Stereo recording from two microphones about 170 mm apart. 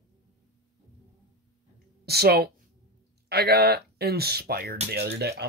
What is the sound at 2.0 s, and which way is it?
Speech, 70° right (ahead or behind).